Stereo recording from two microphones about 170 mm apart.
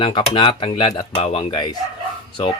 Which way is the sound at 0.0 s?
30° left (ahead or behind).